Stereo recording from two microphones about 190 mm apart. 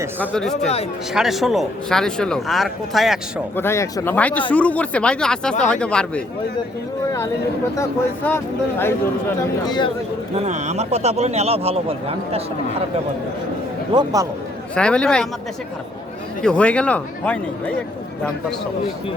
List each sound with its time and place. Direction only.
0.2 s speech: 5° left (ahead or behind)
3.5 s speech: 10° left (ahead or behind)
7.8 s speech: 10° left (ahead or behind)
9.6 s speech: 20° left (ahead or behind)
10.3 s speech: 35° right (ahead or behind)
13.9 s a man's voice: 20° right (ahead or behind)
14.8 s speech: 5° left (ahead or behind)
16.4 s speech: 5° left (ahead or behind)